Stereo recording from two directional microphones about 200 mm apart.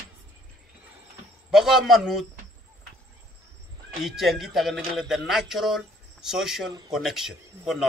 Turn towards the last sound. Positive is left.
turn(degrees=0)  # may be behind; listen again after turning